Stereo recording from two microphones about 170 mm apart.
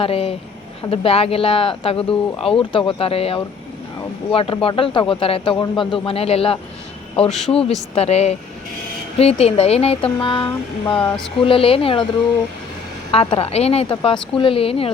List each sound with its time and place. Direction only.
0.0 s speech: 35° left (ahead or behind)
7.3 s speech: centre (ahead or behind)
7.9 s speech: 40° left (ahead or behind)
13.1 s speech: 35° left (ahead or behind)